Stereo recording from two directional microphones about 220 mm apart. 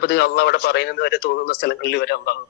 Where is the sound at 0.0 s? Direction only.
45° left (ahead or behind).